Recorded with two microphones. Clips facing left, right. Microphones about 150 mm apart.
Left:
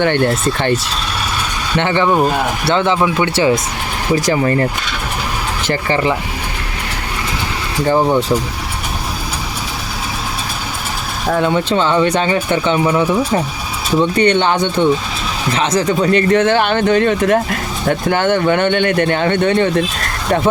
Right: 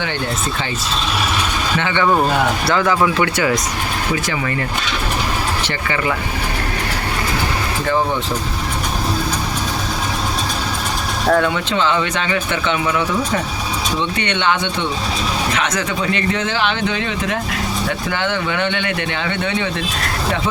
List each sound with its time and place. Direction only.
0.0 s speech: 60° left (ahead or behind)
2.0 s speech: 5° left (ahead or behind)
2.6 s speech: 25° left (ahead or behind)
4.1 s speech: 35° left (ahead or behind)
5.6 s speech: 30° left (ahead or behind)
11.3 s speech: 25° left (ahead or behind)
11.7 s speech: 40° left (ahead or behind)